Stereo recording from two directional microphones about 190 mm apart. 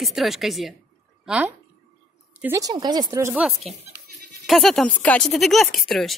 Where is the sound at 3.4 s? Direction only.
Centre (ahead or behind).